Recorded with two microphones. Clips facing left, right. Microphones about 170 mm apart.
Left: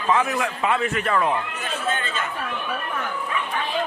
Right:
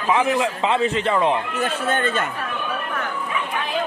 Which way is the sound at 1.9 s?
60° right (ahead or behind).